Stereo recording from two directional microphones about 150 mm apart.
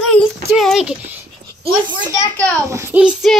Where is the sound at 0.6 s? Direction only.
Centre (ahead or behind).